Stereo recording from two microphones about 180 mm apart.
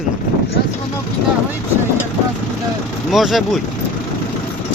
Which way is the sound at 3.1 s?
Centre (ahead or behind).